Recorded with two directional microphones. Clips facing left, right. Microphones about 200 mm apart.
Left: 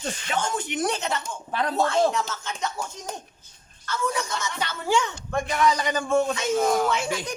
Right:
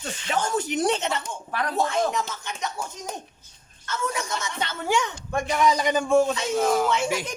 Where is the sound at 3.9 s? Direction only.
25° right (ahead or behind).